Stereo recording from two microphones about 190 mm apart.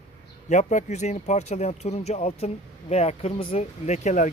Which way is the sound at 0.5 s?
40° left (ahead or behind).